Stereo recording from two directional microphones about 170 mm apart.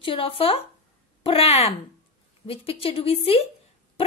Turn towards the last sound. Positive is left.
turn(degrees=35)  # may be behind; listen again after turning